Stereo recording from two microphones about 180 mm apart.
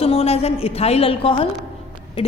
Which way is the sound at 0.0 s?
35° left (ahead or behind).